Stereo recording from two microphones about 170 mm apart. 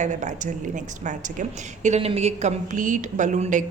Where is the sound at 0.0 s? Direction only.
45° right (ahead or behind).